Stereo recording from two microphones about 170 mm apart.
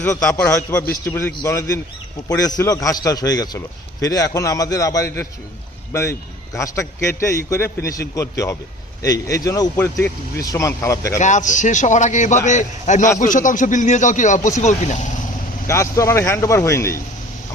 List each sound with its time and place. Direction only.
0.0 s a man's voice: 10° left (ahead or behind)
11.2 s speech: 45° left (ahead or behind)
15.6 s a man's voice: 15° left (ahead or behind)